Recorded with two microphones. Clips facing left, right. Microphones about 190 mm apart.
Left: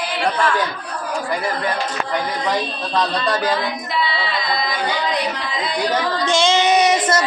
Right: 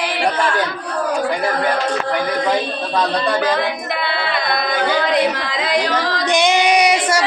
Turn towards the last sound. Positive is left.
turn(degrees=-10)  # may be behind; listen again after turning